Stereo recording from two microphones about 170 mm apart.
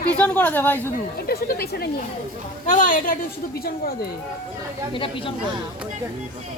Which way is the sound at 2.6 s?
50° left (ahead or behind).